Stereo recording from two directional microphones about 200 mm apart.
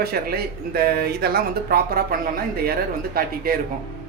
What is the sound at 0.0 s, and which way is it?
Speech, 50° right (ahead or behind).